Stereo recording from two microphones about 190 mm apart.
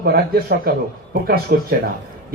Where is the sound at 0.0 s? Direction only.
55° right (ahead or behind).